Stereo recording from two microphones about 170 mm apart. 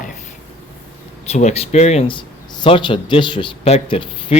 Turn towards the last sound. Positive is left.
turn(degrees=30)  # may be behind; listen again after turning